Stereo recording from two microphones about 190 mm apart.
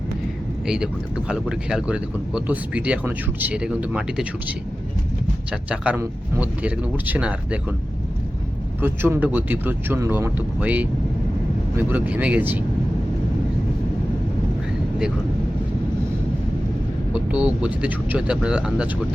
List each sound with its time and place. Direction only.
1.3 s speech: 5° right (ahead or behind)
8.8 s speech: 10° right (ahead or behind)
17.1 s speech: 5° right (ahead or behind)